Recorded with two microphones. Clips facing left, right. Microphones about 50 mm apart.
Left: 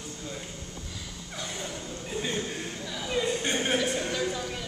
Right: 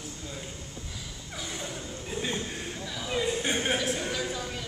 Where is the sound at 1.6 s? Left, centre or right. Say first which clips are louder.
Left 1 dB; centre.